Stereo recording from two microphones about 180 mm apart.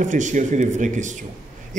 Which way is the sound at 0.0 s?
45° right (ahead or behind).